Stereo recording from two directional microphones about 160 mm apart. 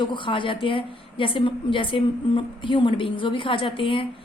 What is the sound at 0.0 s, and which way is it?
A woman's voice, 30° left (ahead or behind).